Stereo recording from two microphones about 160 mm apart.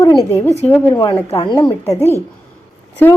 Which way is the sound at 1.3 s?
35° left (ahead or behind).